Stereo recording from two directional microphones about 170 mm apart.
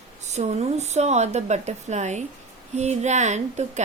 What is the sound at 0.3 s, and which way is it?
A woman's voice, 40° right (ahead or behind).